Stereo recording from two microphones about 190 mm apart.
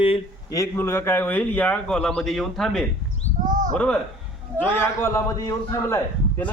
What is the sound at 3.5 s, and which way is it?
Bird, 40° right (ahead or behind).